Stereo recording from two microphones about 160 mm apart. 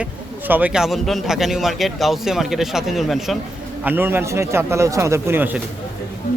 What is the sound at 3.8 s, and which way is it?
A man's voice, 15° right (ahead or behind).